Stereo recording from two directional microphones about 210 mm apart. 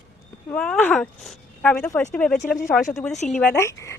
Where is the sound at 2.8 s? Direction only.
40° left (ahead or behind).